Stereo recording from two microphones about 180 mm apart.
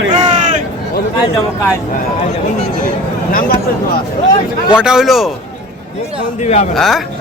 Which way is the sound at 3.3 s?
50° left (ahead or behind).